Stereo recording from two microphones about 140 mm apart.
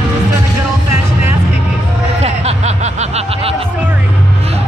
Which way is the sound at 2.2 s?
50° right (ahead or behind).